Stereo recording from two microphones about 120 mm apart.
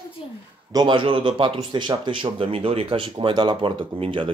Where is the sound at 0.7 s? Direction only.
40° right (ahead or behind).